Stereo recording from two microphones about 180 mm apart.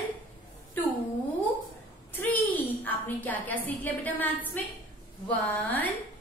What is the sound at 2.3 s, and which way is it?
A woman's voice, 10° left (ahead or behind).